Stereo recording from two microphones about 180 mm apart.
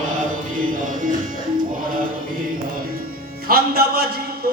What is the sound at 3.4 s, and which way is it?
Music, 55° right (ahead or behind).